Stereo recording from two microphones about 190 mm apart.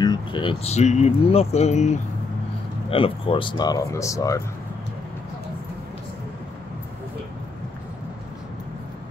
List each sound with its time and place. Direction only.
0.0 s speech: 25° left (ahead or behind)